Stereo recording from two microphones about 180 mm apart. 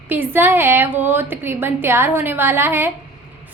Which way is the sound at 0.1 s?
10° right (ahead or behind).